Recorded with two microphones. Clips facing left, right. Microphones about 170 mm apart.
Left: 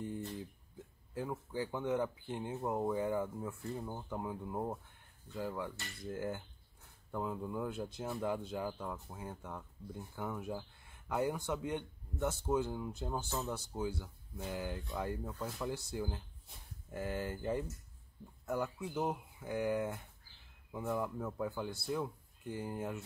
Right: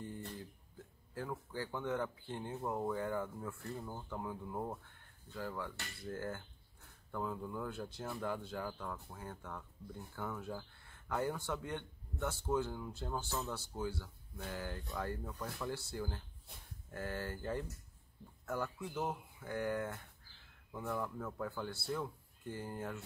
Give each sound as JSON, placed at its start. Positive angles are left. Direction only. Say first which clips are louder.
{"t": 0.0, "sound": "speech", "louder": "left 4 dB", "side_deg": 20}